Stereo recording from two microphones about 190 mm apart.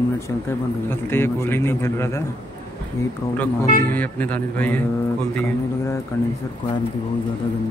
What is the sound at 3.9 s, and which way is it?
Speech, 10° left (ahead or behind).